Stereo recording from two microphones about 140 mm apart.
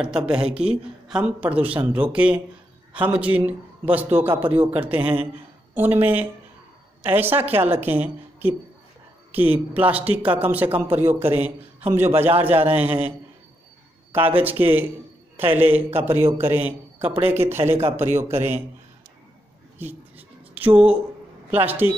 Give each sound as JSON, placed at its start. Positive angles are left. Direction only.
{"t": 0.0, "sound": "a man's voice", "side_deg": -5}
{"t": 14.1, "sound": "a man's voice", "side_deg": -15}
{"t": 19.8, "sound": "a sound", "side_deg": -15}
{"t": 21.5, "sound": "a man's voice", "side_deg": -15}